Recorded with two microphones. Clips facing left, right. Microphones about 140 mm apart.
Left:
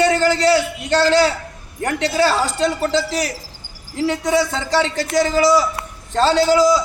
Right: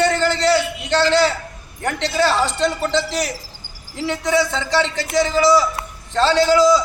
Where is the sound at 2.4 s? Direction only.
40° left (ahead or behind).